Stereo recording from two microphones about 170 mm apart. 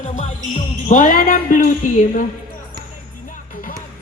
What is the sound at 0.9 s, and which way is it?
Speech, 50° left (ahead or behind).